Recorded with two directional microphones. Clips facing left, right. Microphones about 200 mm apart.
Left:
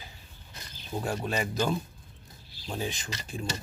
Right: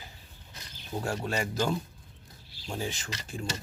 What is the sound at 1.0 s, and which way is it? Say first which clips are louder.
Speech: left 1 dB; 15° left (ahead or behind).